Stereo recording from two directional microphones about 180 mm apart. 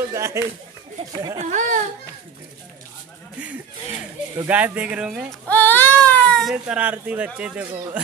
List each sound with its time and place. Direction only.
0.1 s speech: 15° right (ahead or behind)
1.4 s a child's voice: 40° right (ahead or behind)
4.4 s speech: 10° right (ahead or behind)
5.5 s speech: 10° left (ahead or behind); by 8.0 s 5° right (ahead or behind)